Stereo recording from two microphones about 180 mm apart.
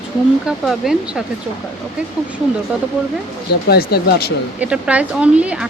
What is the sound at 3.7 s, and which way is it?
Speech, 60° left (ahead or behind).